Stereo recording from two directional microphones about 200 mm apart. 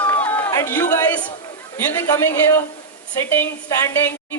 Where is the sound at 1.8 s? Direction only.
10° left (ahead or behind).